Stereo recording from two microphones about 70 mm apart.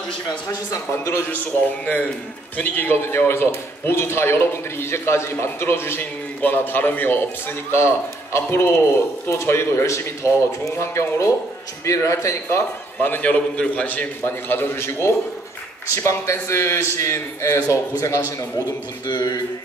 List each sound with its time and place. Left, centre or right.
1.3 s a man's voice: left
13.0 s a man's voice: left
14.2 s a man's voice: left
19.0 s mantra: left